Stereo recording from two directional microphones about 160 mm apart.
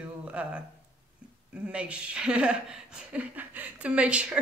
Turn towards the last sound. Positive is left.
turn(degrees=-5)  # may be behind; listen again after turning